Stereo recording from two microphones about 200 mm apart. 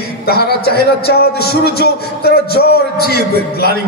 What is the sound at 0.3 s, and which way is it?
A man's voice, 55° left (ahead or behind).